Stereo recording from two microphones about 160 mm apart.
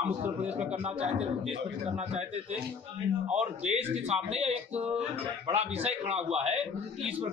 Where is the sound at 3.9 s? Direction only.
40° right (ahead or behind).